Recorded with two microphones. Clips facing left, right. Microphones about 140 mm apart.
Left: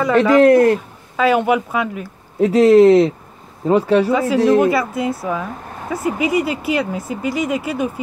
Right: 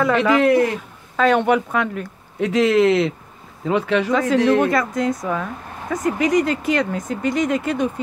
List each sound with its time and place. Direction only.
0.0 s a woman's voice: 5° left (ahead or behind)
0.4 s speech: 45° left (ahead or behind)
1.1 s speech: 5° left (ahead or behind)
2.4 s speech: 40° left (ahead or behind)
4.1 s a woman's voice: 10° left (ahead or behind)